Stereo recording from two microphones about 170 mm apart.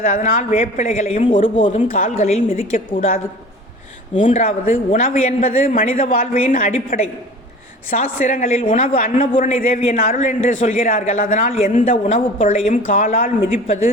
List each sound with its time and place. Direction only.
0.0 s a man's voice: 55° left (ahead or behind)
0.5 s a man's voice: 40° left (ahead or behind)
2.1 s a man's voice: 40° left (ahead or behind)
2.9 s a man's voice: 50° left (ahead or behind)
9.0 s a man's voice: 55° left (ahead or behind)